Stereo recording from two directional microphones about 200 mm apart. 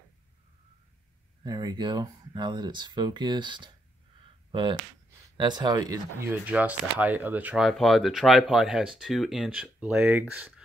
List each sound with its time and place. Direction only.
1.4 s speech: 20° right (ahead or behind)